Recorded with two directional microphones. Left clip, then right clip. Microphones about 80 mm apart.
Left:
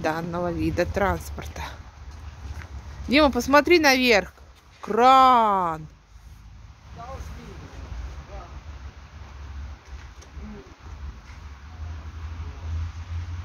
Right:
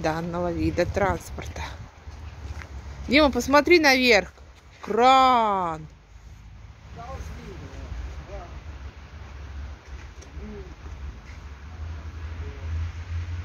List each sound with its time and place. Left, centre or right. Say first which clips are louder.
0.0 s speech: even; left
3.1 s speech: left 1 dB; left